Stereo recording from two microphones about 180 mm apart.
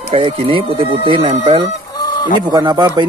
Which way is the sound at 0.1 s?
30° right (ahead or behind).